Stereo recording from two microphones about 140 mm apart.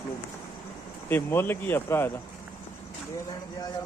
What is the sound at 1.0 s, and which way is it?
Speech, 15° left (ahead or behind).